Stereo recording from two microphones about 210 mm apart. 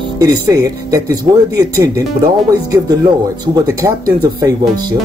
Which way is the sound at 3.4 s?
15° right (ahead or behind).